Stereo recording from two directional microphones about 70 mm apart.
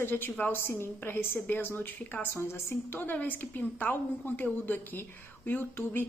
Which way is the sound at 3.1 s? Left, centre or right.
Left.